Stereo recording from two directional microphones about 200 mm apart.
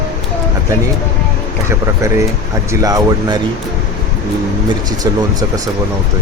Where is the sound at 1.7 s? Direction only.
15° right (ahead or behind).